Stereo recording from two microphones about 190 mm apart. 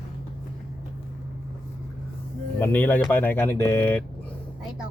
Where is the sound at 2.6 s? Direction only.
10° left (ahead or behind).